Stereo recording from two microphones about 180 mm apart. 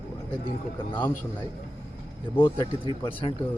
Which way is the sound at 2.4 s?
30° left (ahead or behind).